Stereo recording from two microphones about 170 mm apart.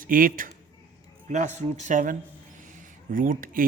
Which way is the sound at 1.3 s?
45° right (ahead or behind).